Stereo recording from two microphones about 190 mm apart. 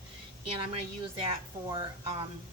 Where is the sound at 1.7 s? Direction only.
25° right (ahead or behind).